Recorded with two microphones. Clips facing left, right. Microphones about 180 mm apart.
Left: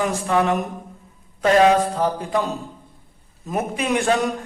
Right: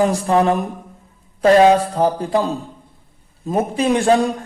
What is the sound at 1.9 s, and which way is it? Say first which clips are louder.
A man's voice: right 4 dB; 35° right (ahead or behind).